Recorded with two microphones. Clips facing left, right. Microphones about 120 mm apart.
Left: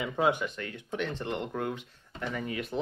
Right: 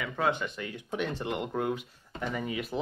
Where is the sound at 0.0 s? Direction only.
15° left (ahead or behind).